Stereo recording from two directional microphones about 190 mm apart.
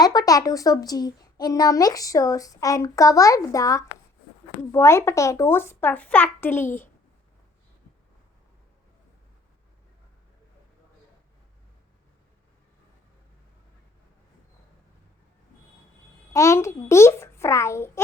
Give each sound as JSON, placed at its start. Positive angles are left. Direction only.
{"t": 0.0, "sound": "a child's voice", "side_deg": 20}
{"t": 16.3, "sound": "a child's voice", "side_deg": 15}